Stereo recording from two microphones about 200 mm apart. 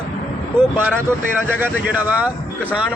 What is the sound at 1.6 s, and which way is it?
Speech, 10° right (ahead or behind).